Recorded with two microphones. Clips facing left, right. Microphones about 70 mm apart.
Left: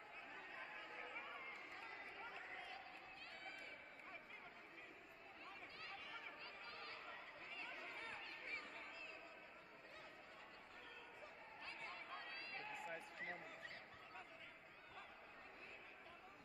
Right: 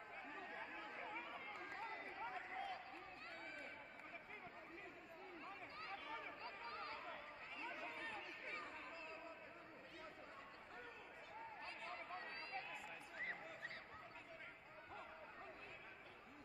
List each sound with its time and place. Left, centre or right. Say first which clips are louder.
1.6 s run: right 5 dB; right
5.8 s chatter: right 5 dB; right
11.6 s a sound: left 2 dB; right